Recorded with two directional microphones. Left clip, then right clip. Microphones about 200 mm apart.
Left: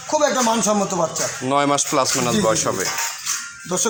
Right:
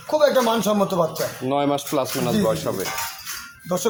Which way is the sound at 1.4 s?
5° right (ahead or behind).